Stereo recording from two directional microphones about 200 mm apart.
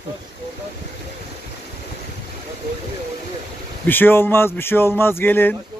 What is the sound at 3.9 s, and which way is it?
Speech, 10° left (ahead or behind).